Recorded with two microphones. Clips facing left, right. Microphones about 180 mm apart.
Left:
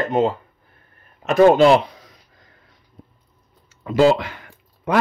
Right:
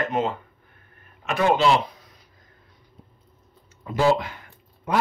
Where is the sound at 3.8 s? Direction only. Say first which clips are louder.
Left 5 dB; 90° left.